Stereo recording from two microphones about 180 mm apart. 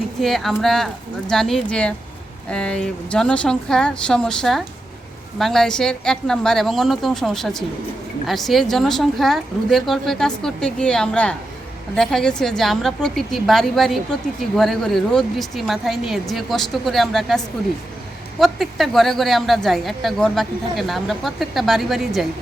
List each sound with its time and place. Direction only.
0.2 s speech: centre (ahead or behind)